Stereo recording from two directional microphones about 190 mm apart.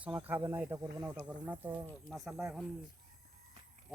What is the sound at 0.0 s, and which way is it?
Speech, 5° right (ahead or behind).